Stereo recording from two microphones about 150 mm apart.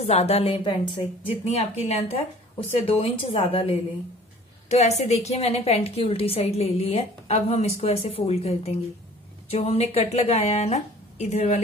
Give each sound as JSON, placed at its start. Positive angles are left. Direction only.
{"t": 0.0, "sound": "a woman's voice", "side_deg": 45}